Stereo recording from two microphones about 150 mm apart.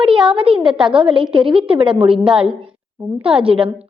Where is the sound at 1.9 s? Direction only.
5° right (ahead or behind).